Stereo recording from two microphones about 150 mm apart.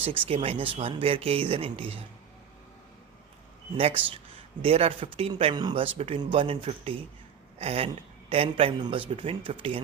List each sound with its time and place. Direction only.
0.0 s speech: 35° right (ahead or behind)
3.8 s speech: 40° right (ahead or behind)